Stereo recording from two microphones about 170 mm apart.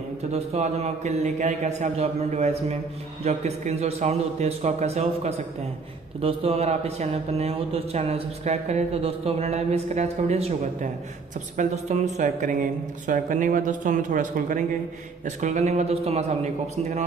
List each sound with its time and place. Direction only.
0.3 s speech: 40° right (ahead or behind)